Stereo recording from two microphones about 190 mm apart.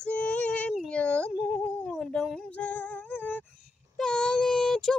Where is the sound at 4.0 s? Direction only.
5° left (ahead or behind).